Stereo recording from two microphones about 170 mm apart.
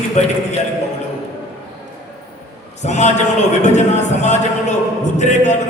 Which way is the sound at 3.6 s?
45° left (ahead or behind).